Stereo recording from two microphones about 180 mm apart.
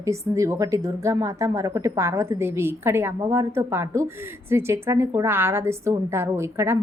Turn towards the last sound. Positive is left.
turn(degrees=-15)  # may be behind; listen again after turning